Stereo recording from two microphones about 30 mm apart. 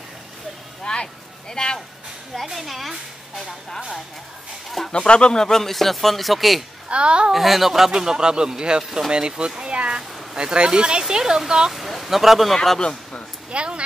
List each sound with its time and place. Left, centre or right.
0.9 s a sound: left
1.5 s speech: left
2.5 s speech: centre
4.6 s speech: centre
4.9 s speech: left
5.6 s speech: centre
6.9 s a child's voice: right
7.3 s a child's voice: centre
11.7 s speech: centre
13.5 s a child's voice: right